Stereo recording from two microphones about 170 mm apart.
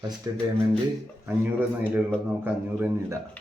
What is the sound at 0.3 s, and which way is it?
Speech, 20° right (ahead or behind).